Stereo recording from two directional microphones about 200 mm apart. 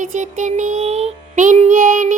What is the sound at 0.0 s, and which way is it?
Child singing, 40° right (ahead or behind).